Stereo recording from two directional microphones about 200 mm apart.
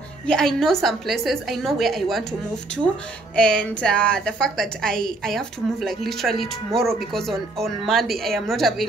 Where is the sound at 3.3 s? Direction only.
5° left (ahead or behind).